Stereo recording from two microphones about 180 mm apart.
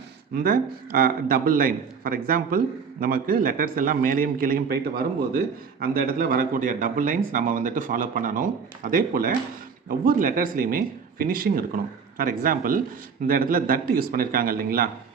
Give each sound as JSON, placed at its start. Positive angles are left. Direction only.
{"t": 0.3, "sound": "speech", "side_deg": -50}